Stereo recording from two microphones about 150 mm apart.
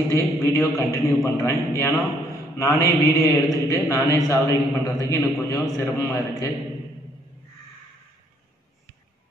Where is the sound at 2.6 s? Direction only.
20° left (ahead or behind).